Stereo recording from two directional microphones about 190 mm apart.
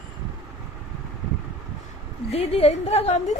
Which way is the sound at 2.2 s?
35° left (ahead or behind).